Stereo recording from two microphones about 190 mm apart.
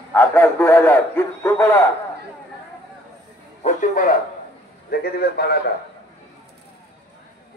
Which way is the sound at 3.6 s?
40° left (ahead or behind).